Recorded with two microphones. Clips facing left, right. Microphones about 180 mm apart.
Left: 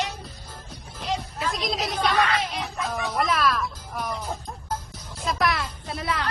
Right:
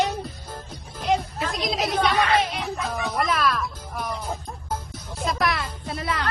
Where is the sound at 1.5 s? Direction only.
Centre (ahead or behind).